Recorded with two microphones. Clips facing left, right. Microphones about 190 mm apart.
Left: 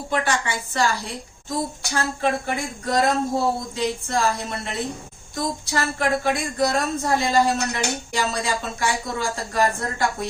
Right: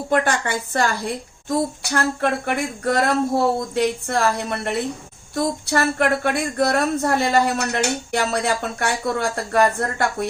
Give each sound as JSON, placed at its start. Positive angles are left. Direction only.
{"t": 0.1, "sound": "a woman's voice", "side_deg": -55}